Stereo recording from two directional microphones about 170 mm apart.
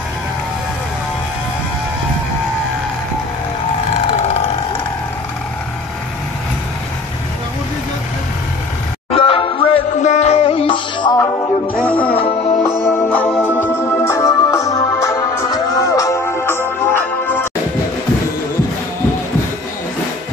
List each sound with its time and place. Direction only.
4.1 s vehicle: 40° left (ahead or behind)
9.1 s music: 35° left (ahead or behind)
12.6 s music: 15° left (ahead or behind)